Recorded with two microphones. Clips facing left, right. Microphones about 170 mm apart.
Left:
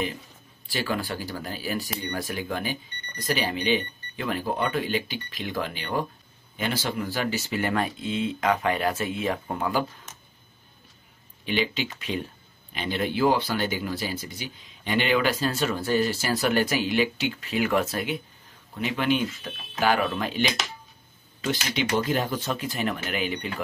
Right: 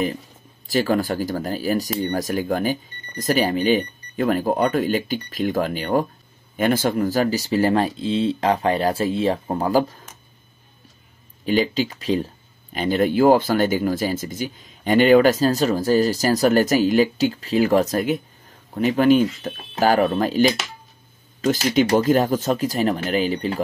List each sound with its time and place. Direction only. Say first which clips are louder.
0.7 s speech: right 9 dB; 45° right (ahead or behind)
11.4 s speech: right 7 dB; 40° right (ahead or behind)